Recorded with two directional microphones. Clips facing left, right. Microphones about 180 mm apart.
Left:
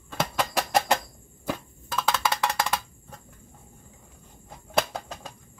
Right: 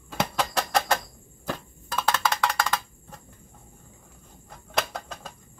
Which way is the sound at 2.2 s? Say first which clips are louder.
Even; 20° left (ahead or behind).